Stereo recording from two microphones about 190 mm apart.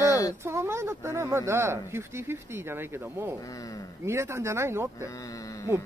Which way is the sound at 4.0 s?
15° right (ahead or behind).